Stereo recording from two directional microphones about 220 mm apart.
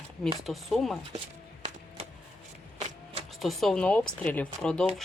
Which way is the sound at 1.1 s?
30° right (ahead or behind).